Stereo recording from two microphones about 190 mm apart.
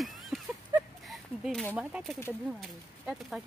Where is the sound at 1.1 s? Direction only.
Centre (ahead or behind).